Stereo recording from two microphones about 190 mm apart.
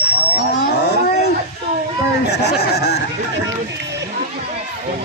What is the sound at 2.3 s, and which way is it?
Speech, 60° left (ahead or behind).